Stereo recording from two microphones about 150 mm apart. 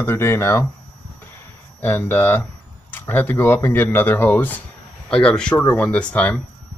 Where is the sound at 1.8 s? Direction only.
15° left (ahead or behind).